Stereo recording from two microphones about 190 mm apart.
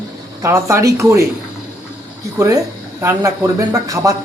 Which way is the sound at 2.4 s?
15° right (ahead or behind).